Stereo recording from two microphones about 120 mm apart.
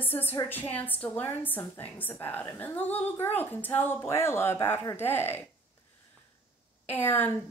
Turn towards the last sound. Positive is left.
turn(degrees=20)  # may be behind; listen again after turning